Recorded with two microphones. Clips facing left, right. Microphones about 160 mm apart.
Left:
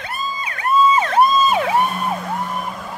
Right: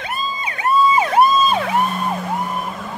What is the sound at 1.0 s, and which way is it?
Emergency vehicle, 10° right (ahead or behind).